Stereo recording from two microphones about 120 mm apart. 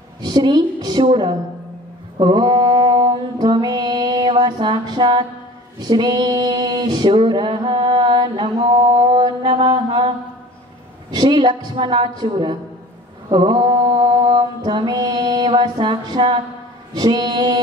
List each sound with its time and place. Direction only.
0.2 s a woman's voice: 35° right (ahead or behind)
2.1 s mantra: 40° right (ahead or behind)
5.8 s female singing: 35° right (ahead or behind)
8.5 s mantra: 35° right (ahead or behind)